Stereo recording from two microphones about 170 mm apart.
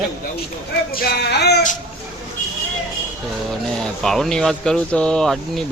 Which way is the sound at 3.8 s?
5° left (ahead or behind).